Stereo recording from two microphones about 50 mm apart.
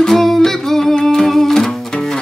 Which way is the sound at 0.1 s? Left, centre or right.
Centre.